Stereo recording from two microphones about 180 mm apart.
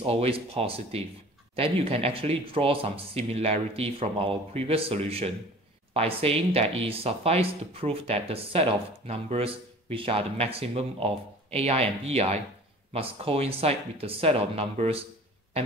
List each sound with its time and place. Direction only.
0.0 s speech: 35° right (ahead or behind)